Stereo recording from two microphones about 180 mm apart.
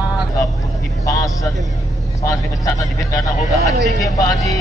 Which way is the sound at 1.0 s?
20° left (ahead or behind).